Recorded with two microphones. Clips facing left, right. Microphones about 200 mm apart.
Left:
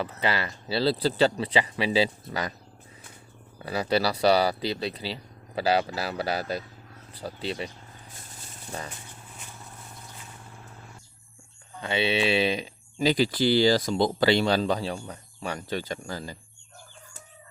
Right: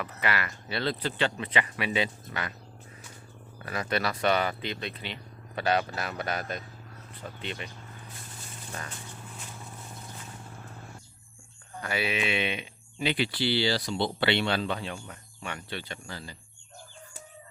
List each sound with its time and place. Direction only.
0.0 s speech: 30° left (ahead or behind)
3.7 s speech: 30° left (ahead or behind)
8.7 s speech: 30° left (ahead or behind)
11.8 s speech: 25° left (ahead or behind); by 16.4 s 45° left (ahead or behind)